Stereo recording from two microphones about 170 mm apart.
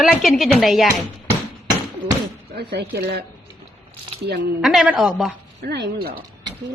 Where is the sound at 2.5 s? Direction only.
75° right (ahead or behind).